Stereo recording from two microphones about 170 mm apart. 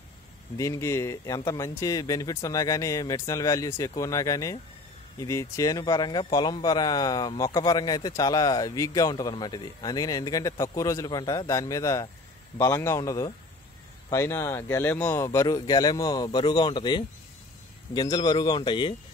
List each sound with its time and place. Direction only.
0.6 s a man's voice: 15° left (ahead or behind)